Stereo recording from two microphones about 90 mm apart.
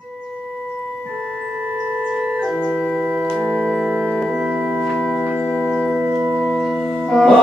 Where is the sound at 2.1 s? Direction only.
15° right (ahead or behind).